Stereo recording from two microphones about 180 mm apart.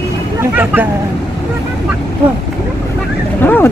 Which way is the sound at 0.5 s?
10° right (ahead or behind).